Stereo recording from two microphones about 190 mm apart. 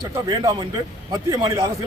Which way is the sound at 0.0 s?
20° right (ahead or behind).